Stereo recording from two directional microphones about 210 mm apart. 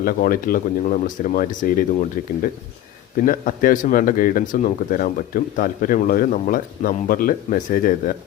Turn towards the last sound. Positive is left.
turn(degrees=40)  # may be behind; listen again after turning